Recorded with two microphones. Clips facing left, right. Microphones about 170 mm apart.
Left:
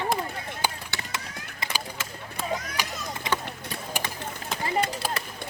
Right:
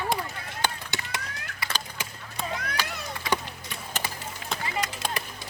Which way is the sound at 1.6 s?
25° left (ahead or behind).